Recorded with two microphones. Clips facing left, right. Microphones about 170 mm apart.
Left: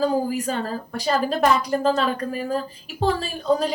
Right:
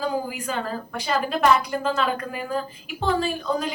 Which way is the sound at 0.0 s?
40° left (ahead or behind).